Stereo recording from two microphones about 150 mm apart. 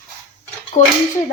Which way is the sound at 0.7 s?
70° left (ahead or behind).